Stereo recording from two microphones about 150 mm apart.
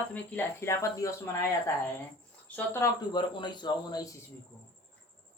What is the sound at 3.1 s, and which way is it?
Speech, 30° left (ahead or behind).